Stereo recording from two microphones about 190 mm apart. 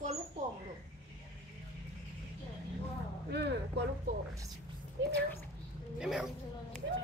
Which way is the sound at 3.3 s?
60° right (ahead or behind).